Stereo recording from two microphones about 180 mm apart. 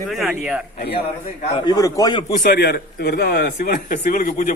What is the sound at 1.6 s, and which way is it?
Speech, 20° left (ahead or behind).